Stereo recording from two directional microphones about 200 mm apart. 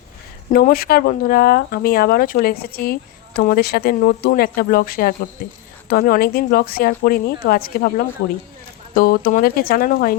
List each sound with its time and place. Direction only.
0.5 s speech: 50° left (ahead or behind)